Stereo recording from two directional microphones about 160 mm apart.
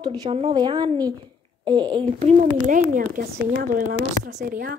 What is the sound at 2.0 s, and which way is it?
A woman's voice, 45° right (ahead or behind).